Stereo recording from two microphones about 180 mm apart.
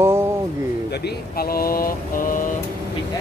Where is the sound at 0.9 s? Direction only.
65° left (ahead or behind); by 2.5 s 50° left (ahead or behind).